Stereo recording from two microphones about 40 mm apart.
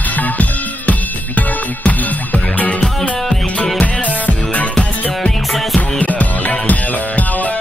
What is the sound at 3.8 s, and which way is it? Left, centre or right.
Music, left.